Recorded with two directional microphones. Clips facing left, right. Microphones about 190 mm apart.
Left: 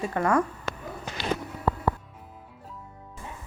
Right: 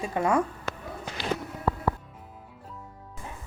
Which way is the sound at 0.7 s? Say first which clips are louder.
Left 1 dB; centre (ahead or behind).